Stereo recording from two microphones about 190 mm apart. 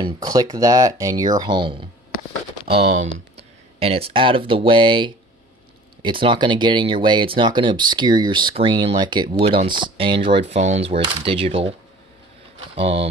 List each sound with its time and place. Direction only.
0.0 s speech: 20° right (ahead or behind)
3.3 s speech: 30° right (ahead or behind)